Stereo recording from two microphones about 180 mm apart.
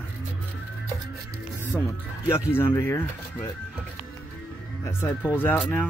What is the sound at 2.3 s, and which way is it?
Speech, 15° left (ahead or behind).